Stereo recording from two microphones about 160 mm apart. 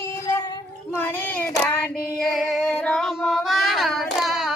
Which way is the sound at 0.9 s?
15° left (ahead or behind).